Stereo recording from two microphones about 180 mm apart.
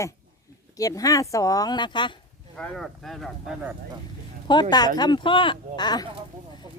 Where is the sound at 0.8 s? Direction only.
20° left (ahead or behind).